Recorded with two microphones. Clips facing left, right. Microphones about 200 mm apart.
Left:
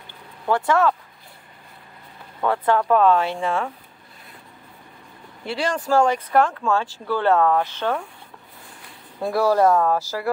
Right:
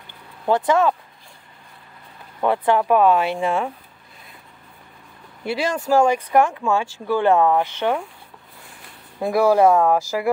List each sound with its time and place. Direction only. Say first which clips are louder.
0.5 s speech: right 2 dB; 20° right (ahead or behind)
2.4 s speech: right 2 dB; 15° right (ahead or behind)
5.4 s speech: right 2 dB; 10° right (ahead or behind)
9.2 s speech: right 3 dB; 10° right (ahead or behind)